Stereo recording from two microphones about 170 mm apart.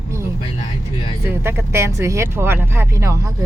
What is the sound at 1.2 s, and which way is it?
Speech, 15° right (ahead or behind).